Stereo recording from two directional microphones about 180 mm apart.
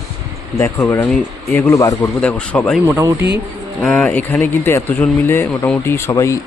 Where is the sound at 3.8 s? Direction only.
5° left (ahead or behind).